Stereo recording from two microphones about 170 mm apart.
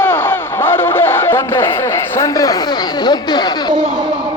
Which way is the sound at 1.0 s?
15° left (ahead or behind).